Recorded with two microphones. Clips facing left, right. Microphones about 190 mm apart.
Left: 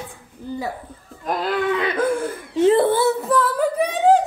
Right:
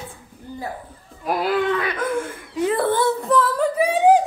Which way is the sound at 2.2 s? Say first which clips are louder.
Left 6 dB; 25° left (ahead or behind).